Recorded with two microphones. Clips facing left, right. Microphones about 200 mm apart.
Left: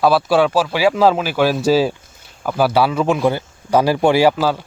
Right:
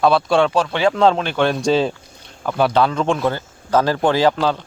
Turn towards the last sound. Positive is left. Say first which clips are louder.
# left 2 dB
turn(degrees=5)  # may be behind; listen again after turning